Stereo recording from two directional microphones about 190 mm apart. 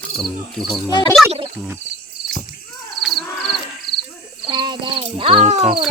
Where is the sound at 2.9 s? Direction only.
Centre (ahead or behind).